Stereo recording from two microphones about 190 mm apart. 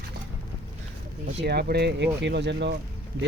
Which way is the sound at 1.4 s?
60° right (ahead or behind).